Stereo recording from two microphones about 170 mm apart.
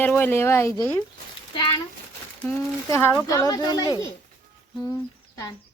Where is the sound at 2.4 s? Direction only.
10° left (ahead or behind).